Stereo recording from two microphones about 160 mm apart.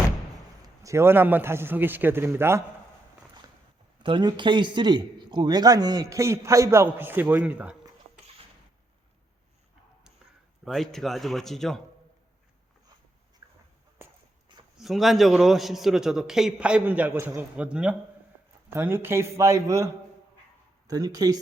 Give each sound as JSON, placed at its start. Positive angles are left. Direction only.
{"t": 0.8, "sound": "a man's voice", "side_deg": -20}
{"t": 4.0, "sound": "a man's voice", "side_deg": -30}
{"t": 10.7, "sound": "a man's voice", "side_deg": 0}
{"t": 13.4, "sound": "a sound", "side_deg": -20}
{"t": 14.8, "sound": "a man's voice", "side_deg": 0}